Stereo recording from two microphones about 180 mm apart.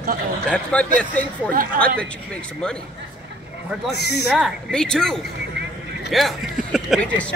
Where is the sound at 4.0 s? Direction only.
65° left (ahead or behind).